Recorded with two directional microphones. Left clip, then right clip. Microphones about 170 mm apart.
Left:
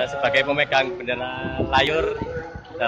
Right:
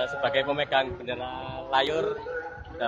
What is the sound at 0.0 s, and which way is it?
A man's voice, 5° left (ahead or behind).